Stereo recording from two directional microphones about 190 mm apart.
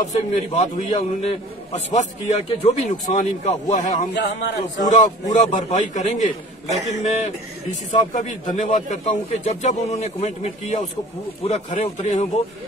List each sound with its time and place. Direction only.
0.1 s a man's voice: 35° left (ahead or behind)
4.1 s speech: 65° left (ahead or behind)
4.7 s a man's voice: 40° left (ahead or behind)